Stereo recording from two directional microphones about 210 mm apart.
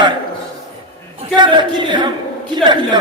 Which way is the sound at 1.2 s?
20° right (ahead or behind).